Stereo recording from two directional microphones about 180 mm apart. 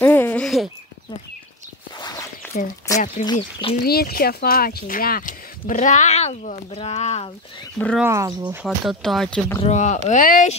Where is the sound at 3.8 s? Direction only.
60° left (ahead or behind); by 7.7 s 30° left (ahead or behind).